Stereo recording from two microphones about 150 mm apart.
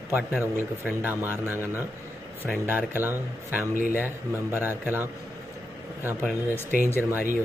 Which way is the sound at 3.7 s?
60° right (ahead or behind).